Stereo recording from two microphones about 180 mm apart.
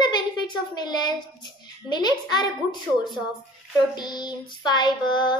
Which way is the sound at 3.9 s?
25° left (ahead or behind).